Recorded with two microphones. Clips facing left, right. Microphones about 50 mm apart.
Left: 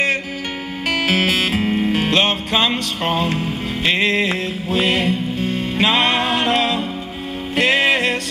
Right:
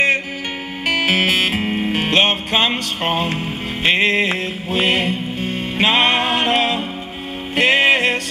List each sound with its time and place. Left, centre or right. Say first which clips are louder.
0.8 s music: right 1 dB; centre